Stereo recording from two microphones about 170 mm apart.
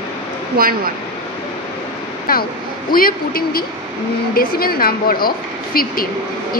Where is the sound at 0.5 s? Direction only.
60° right (ahead or behind).